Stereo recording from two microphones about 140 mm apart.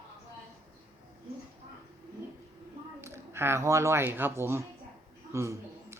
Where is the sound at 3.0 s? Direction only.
20° right (ahead or behind).